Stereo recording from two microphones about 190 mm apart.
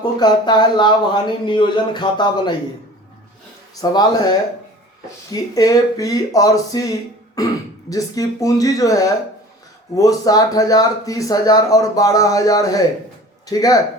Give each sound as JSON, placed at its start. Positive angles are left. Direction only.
{"t": 0.0, "sound": "speech", "side_deg": 20}
{"t": 3.8, "sound": "speech", "side_deg": 20}